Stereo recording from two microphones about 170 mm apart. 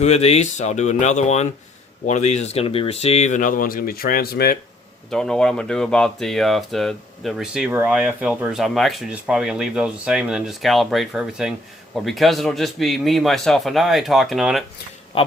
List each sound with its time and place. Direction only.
0.0 s speech: 40° left (ahead or behind); by 4.5 s 65° left (ahead or behind)
5.1 s speech: 5° left (ahead or behind)